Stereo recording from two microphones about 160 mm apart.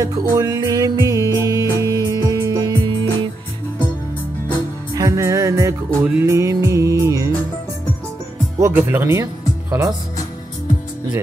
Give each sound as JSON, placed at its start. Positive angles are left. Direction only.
{"t": 0.0, "sound": "music", "side_deg": -20}
{"t": 4.9, "sound": "music", "side_deg": -20}
{"t": 8.5, "sound": "speech", "side_deg": -15}